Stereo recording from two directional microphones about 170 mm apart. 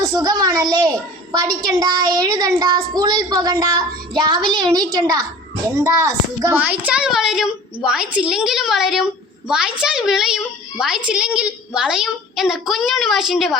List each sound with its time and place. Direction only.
0.0 s a child's voice: 20° right (ahead or behind)
6.6 s a child's voice: 5° right (ahead or behind)